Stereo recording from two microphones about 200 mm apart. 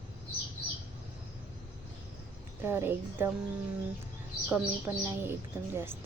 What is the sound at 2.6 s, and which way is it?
Speech, 10° right (ahead or behind).